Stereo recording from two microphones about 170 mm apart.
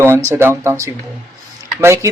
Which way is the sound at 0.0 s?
15° right (ahead or behind).